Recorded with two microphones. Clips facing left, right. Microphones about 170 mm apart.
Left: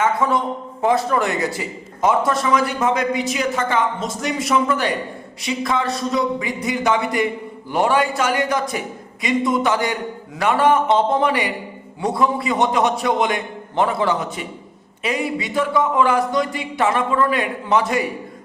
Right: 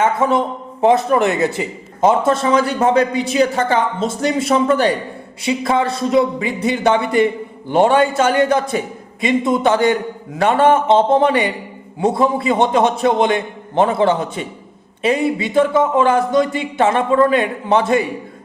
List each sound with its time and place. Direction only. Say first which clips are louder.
0.0 s a man's voice: right 3 dB; 20° right (ahead or behind)